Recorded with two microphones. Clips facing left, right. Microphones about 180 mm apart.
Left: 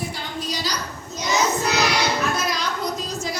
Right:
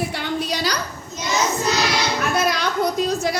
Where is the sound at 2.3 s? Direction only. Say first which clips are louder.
Right 5 dB; 60° right (ahead or behind).